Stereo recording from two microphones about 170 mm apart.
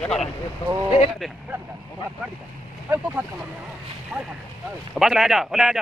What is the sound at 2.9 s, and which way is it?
Speech, 10° right (ahead or behind).